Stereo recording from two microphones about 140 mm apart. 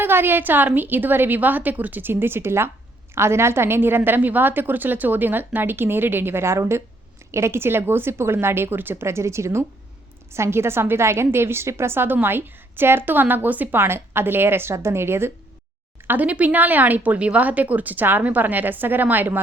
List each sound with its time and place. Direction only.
0.0 s a woman's voice: 15° right (ahead or behind)